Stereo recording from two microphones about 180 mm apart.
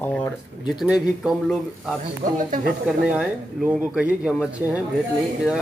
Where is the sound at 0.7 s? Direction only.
5° right (ahead or behind).